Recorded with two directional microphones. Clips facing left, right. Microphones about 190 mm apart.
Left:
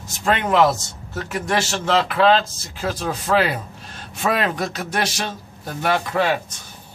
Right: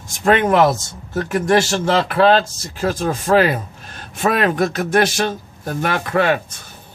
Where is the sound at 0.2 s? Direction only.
50° right (ahead or behind).